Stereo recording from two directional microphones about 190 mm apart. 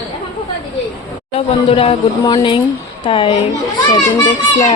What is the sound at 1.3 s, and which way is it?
A woman's voice, 30° left (ahead or behind).